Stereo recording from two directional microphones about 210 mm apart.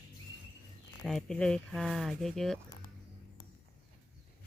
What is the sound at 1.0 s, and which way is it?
Speech, centre (ahead or behind).